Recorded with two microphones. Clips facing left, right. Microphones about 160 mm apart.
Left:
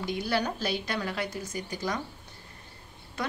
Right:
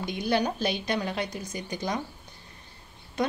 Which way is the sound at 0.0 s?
20° right (ahead or behind).